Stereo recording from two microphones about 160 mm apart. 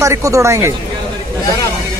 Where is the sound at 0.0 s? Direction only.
20° right (ahead or behind).